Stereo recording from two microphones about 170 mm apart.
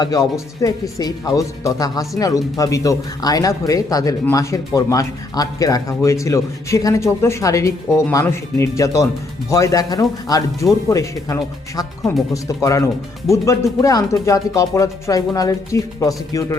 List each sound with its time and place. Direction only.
0.0 s speech: 20° left (ahead or behind)